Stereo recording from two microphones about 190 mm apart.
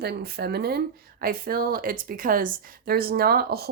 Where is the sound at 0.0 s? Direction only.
55° right (ahead or behind).